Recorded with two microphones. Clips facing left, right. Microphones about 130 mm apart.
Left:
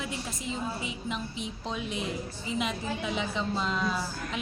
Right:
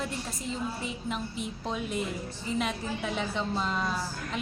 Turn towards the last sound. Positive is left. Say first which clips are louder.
# even
turn(degrees=-5)  # may be behind; listen again after turning